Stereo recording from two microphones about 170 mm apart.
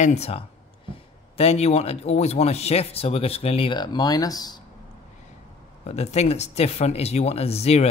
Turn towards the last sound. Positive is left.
turn(degrees=40)  # may be behind; listen again after turning